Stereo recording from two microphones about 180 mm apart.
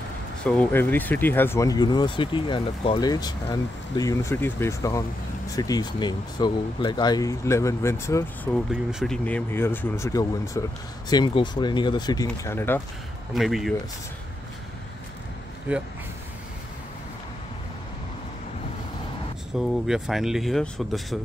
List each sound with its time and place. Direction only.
0.4 s speech: 5° left (ahead or behind)
8.5 s speech: 5° left (ahead or behind)
13.3 s speech: centre (ahead or behind)
15.7 s speech: 10° right (ahead or behind)
19.5 s speech: centre (ahead or behind)